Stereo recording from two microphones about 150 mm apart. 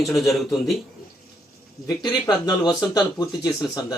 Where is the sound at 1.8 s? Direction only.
30° left (ahead or behind).